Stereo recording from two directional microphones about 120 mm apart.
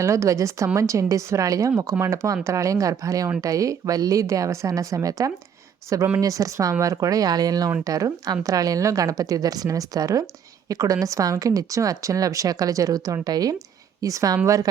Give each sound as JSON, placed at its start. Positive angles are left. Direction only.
{"t": 0.0, "sound": "a woman's voice", "side_deg": -25}